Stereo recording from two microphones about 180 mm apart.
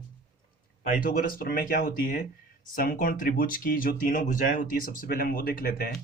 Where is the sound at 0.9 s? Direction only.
50° left (ahead or behind).